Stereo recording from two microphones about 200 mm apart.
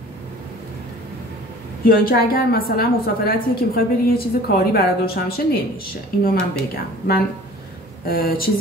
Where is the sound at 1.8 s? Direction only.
50° left (ahead or behind).